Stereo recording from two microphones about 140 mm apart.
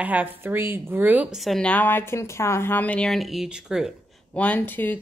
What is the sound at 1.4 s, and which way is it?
A woman's voice, 5° left (ahead or behind).